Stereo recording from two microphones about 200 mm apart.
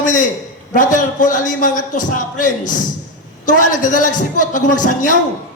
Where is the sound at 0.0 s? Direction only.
40° left (ahead or behind).